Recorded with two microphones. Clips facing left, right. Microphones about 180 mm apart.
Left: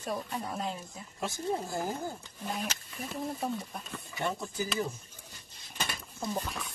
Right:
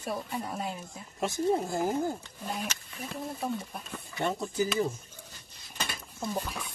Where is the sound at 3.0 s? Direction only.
Centre (ahead or behind).